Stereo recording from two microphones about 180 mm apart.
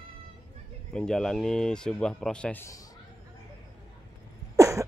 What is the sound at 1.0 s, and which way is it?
Speech, 5° left (ahead or behind).